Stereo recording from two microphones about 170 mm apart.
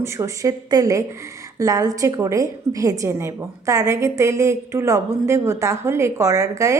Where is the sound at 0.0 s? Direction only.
15° right (ahead or behind).